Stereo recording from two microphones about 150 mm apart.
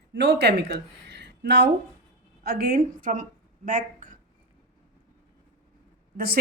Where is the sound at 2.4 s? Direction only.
90° right; by 3.2 s 65° right (ahead or behind).